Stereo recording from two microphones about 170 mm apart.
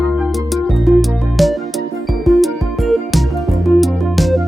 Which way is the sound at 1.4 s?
Centre (ahead or behind).